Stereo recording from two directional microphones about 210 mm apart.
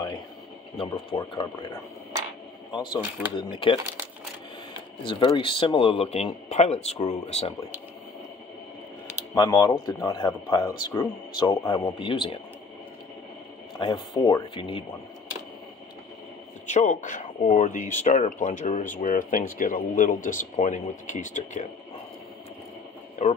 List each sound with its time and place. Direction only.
0.7 s speech: 25° left (ahead or behind)
3.3 s speech: 25° left (ahead or behind)
5.0 s speech: 20° left (ahead or behind)
9.3 s speech: 20° left (ahead or behind)
13.7 s speech: 20° left (ahead or behind)
16.6 s speech: 35° left (ahead or behind)
23.2 s speech: 35° left (ahead or behind)